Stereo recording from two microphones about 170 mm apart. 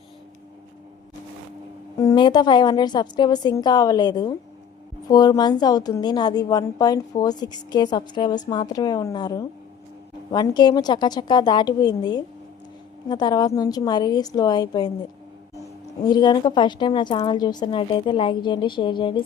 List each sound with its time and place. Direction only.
2.0 s a woman's voice: 25° left (ahead or behind)
16.0 s a woman's voice: 25° left (ahead or behind)